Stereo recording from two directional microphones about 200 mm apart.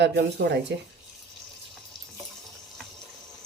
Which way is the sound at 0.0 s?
60° right (ahead or behind).